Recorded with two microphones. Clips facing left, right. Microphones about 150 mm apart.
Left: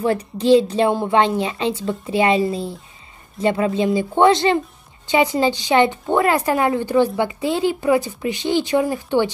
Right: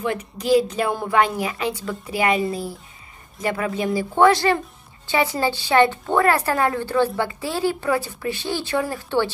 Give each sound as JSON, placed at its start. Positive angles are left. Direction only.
{"t": 0.0, "sound": "a woman's voice", "side_deg": 35}